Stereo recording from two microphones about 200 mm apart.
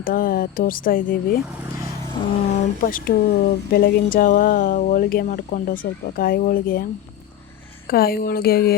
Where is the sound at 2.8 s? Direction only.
45° left (ahead or behind).